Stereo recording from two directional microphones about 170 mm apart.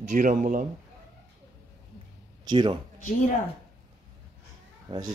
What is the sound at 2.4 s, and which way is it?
Speech, 25° right (ahead or behind).